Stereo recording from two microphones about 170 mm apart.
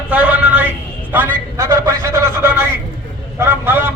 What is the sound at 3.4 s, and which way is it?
Vehicle, 10° right (ahead or behind).